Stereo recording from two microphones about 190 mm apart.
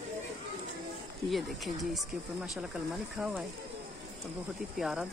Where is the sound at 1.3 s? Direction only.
Centre (ahead or behind).